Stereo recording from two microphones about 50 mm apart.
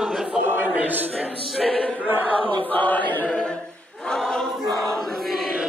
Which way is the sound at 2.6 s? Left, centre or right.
Left.